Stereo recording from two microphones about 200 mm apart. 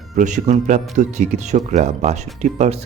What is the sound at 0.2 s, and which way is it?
Speech, 40° right (ahead or behind).